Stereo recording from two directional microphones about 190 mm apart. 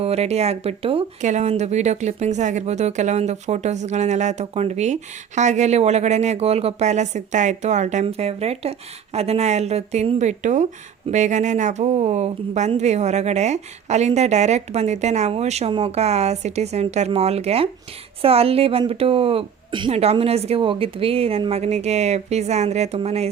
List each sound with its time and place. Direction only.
0.0 s speech: 35° right (ahead or behind)